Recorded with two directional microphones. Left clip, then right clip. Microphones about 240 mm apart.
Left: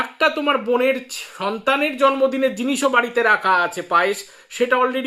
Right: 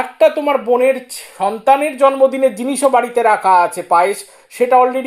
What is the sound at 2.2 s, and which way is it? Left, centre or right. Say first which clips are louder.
Speech: right 5 dB; centre.